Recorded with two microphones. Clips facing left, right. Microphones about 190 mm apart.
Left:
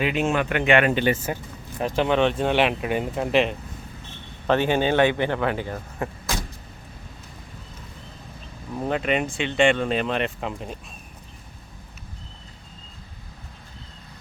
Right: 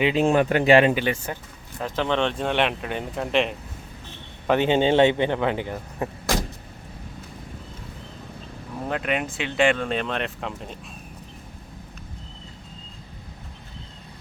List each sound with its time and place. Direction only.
0.0 s speech: 30° right (ahead or behind)
0.9 s speech: 5° left (ahead or behind)
4.4 s speech: 20° right (ahead or behind)
8.9 s speech: centre (ahead or behind)